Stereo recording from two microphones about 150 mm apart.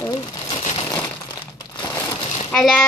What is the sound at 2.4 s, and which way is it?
Speech, 5° left (ahead or behind).